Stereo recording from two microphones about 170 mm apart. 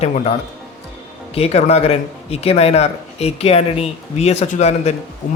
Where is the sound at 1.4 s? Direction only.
40° left (ahead or behind).